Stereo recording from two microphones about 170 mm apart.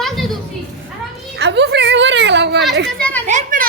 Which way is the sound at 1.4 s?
85° right.